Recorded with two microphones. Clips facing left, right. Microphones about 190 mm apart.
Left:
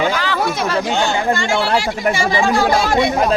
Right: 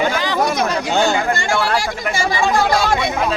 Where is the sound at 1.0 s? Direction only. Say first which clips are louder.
Even; 45° right (ahead or behind).